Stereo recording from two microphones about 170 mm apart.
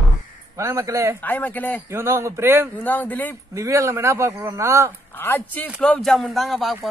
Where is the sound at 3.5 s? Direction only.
20° right (ahead or behind).